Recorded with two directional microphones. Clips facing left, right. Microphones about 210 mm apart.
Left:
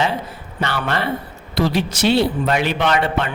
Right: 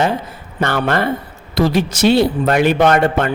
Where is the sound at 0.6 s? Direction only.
50° right (ahead or behind).